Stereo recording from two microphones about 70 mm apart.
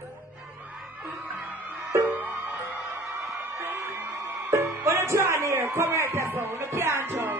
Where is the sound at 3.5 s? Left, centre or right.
Right.